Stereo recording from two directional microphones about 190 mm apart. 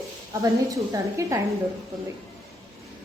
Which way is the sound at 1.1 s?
15° right (ahead or behind).